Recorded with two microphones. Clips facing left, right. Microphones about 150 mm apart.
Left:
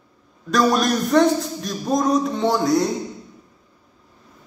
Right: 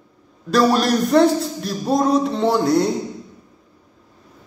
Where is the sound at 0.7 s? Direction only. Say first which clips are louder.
Right 2 dB; 30° right (ahead or behind).